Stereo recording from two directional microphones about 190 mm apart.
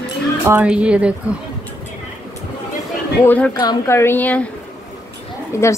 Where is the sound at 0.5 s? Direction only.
10° right (ahead or behind).